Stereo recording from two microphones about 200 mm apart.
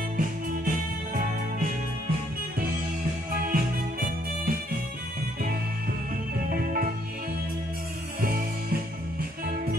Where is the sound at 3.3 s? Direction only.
45° right (ahead or behind).